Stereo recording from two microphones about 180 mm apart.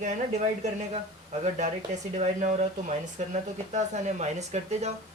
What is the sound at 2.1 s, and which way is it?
Speech, 40° right (ahead or behind).